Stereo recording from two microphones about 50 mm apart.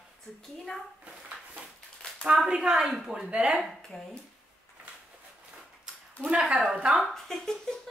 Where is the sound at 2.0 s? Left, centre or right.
Centre.